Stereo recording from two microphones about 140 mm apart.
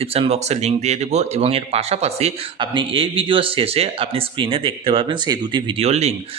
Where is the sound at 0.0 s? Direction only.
45° right (ahead or behind).